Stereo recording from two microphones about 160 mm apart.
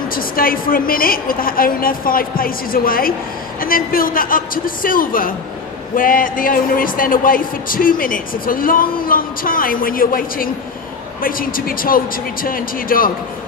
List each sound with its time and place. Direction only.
0.1 s a man's voice: 65° left (ahead or behind)